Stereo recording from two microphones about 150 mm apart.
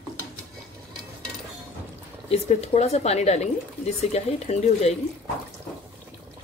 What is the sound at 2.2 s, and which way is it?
Speech, 45° left (ahead or behind).